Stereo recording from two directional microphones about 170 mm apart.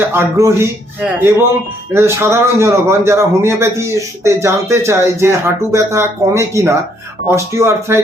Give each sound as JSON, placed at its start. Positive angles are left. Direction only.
{"t": 0.1, "sound": "a man's voice", "side_deg": -15}